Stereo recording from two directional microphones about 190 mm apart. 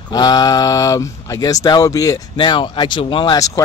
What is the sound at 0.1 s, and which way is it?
Speech, 20° left (ahead or behind).